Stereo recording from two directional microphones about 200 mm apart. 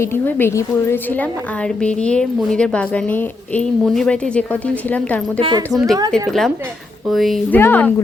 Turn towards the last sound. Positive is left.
turn(degrees=10)  # may be behind; listen again after turning